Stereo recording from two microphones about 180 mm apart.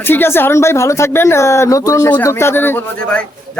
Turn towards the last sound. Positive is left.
turn(degrees=10)  # may be behind; listen again after turning